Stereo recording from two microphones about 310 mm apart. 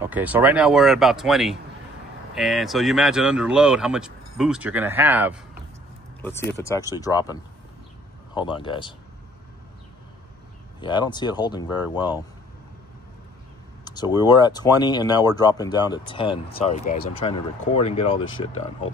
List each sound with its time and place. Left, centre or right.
0.0 s speech: centre
6.2 s speech: centre
8.4 s speech: centre
10.8 s speech: centre
13.8 s speech: centre